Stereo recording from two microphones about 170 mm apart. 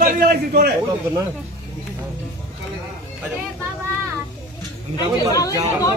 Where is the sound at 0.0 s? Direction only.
60° right (ahead or behind).